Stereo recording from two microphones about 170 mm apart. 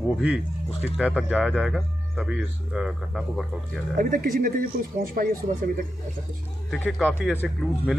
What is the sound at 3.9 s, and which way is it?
Speech, 55° right (ahead or behind).